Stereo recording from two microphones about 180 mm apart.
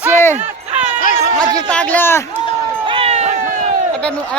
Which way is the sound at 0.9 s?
45° left (ahead or behind).